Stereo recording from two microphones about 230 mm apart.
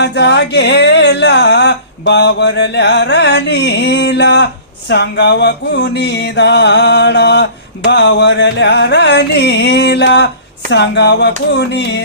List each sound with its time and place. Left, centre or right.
0.0 s speech: left
4.9 s music: left